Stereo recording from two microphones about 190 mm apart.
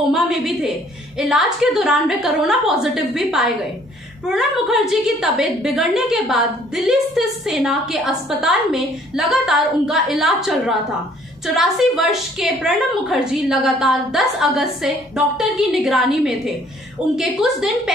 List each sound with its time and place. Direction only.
0.1 s a woman's voice: centre (ahead or behind)